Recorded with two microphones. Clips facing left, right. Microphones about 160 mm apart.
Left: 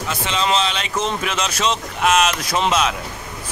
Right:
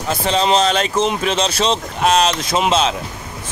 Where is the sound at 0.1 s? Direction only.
35° right (ahead or behind).